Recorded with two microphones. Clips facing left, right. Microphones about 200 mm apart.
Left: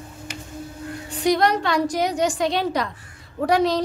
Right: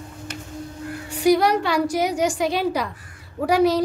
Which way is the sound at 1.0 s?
10° right (ahead or behind).